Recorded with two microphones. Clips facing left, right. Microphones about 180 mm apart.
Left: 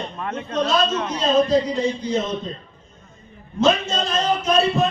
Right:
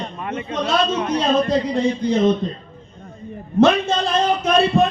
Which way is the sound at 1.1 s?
55° right (ahead or behind).